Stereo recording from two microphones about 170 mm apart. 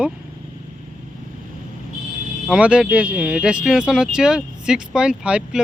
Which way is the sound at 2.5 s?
5° right (ahead or behind).